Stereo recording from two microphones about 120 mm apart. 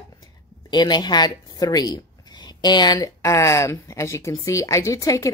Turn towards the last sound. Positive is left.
turn(degrees=25)  # may be behind; listen again after turning